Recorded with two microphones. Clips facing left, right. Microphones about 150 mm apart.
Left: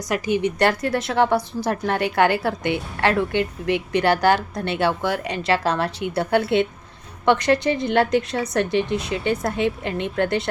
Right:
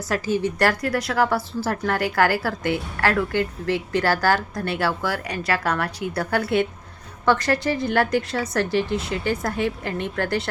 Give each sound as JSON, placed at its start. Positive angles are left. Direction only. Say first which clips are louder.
{"t": 0.1, "sound": "a woman's voice", "louder": "left 2 dB", "side_deg": 20}